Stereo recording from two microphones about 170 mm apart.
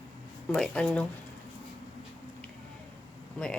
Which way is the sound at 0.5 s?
5° left (ahead or behind).